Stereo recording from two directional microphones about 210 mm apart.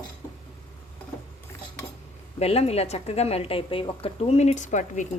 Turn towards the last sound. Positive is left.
turn(degrees=35)  # may be behind; listen again after turning